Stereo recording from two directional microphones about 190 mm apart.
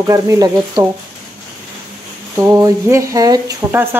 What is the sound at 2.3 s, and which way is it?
Speech, 15° right (ahead or behind).